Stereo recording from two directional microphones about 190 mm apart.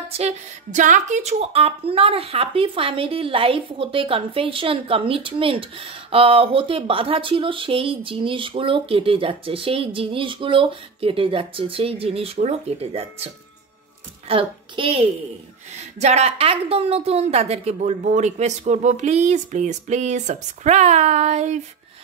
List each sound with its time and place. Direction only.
0.1 s a child's voice: 35° right (ahead or behind)